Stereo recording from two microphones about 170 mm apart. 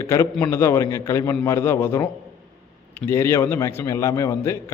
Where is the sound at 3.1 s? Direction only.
15° left (ahead or behind).